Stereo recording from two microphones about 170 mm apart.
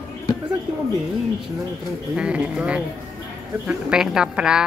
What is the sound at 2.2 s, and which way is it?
A woman's voice, 5° right (ahead or behind).